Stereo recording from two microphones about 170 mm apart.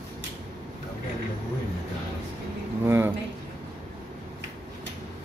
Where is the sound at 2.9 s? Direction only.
15° right (ahead or behind).